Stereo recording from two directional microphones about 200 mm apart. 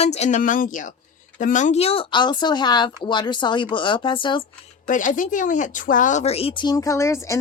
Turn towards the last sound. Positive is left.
turn(degrees=15)  # may be behind; listen again after turning